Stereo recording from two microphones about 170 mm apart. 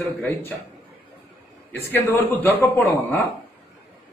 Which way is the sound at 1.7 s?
15° left (ahead or behind).